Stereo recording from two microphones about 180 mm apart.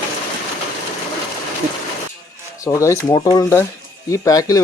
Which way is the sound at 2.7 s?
15° left (ahead or behind).